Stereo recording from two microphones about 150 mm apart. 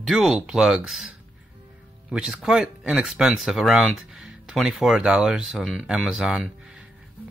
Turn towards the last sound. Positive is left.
turn(degrees=-5)  # may be behind; listen again after turning